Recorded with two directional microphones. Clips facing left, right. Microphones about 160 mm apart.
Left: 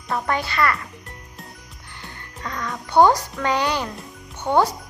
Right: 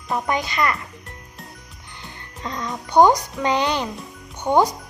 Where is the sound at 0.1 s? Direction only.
15° right (ahead or behind).